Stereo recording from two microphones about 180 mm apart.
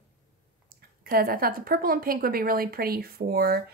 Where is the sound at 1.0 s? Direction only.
55° right (ahead or behind).